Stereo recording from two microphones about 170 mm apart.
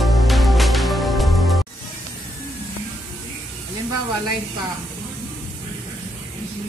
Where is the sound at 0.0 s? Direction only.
Centre (ahead or behind).